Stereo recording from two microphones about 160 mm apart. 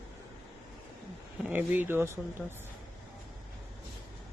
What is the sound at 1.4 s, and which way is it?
Speech, 10° right (ahead or behind).